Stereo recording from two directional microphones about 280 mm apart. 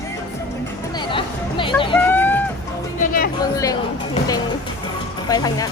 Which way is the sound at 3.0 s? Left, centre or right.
Left.